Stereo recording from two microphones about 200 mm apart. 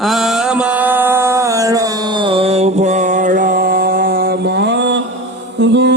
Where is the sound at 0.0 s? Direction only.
Centre (ahead or behind).